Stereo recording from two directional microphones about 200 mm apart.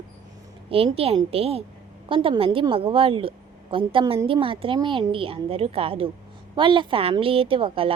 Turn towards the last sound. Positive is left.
turn(degrees=-25)  # may be behind; listen again after turning